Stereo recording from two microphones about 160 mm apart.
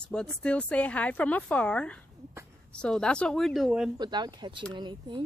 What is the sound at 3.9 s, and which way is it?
Speech, 25° right (ahead or behind).